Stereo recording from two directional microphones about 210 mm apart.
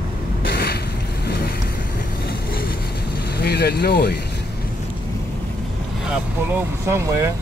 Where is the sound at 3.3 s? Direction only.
50° left (ahead or behind).